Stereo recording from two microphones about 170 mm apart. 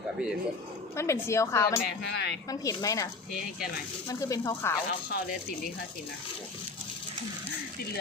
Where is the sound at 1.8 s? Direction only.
75° left (ahead or behind).